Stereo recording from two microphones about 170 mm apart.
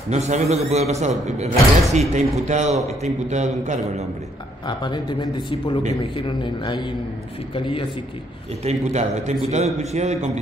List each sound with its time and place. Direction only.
0.1 s a man's voice: 40° right (ahead or behind)
4.6 s a man's voice: 25° left (ahead or behind)
8.6 s a man's voice: 40° right (ahead or behind)